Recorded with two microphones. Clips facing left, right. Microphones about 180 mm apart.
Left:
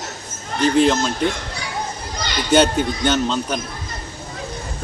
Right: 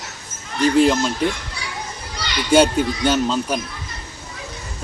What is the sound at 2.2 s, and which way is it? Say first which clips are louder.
Children playing: even; 45° left (ahead or behind).